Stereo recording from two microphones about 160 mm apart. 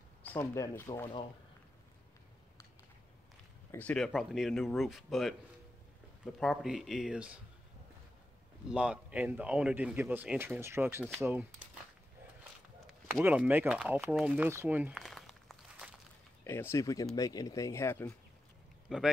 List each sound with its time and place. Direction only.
0.2 s speech: 15° left (ahead or behind)
3.7 s speech: 5° left (ahead or behind)
8.6 s speech: 5° right (ahead or behind)
13.1 s speech: 10° right (ahead or behind)
15.0 s a sound: centre (ahead or behind)
16.4 s speech: 15° left (ahead or behind)
18.9 s speech: centre (ahead or behind)